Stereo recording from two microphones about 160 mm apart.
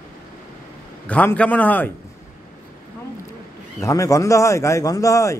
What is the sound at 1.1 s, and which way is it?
Speech, 10° left (ahead or behind).